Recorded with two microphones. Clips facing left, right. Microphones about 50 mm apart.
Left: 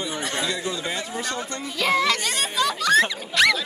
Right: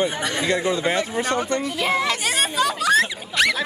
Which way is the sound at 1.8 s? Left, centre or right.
Centre.